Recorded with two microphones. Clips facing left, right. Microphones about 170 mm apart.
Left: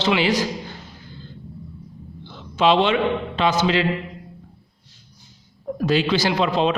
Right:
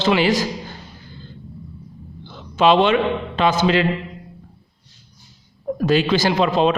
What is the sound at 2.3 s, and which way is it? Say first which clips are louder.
A man's voice: right 2 dB; 50° right (ahead or behind).